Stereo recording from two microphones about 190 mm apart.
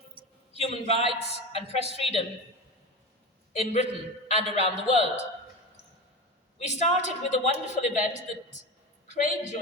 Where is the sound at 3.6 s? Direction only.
35° left (ahead or behind).